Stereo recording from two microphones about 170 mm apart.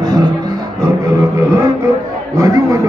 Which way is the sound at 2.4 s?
20° right (ahead or behind).